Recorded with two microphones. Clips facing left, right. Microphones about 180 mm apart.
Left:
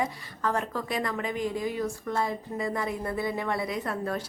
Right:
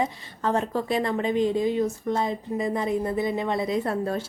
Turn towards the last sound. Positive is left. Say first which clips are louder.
# right 5 dB
turn(degrees=-25)  # may be behind; listen again after turning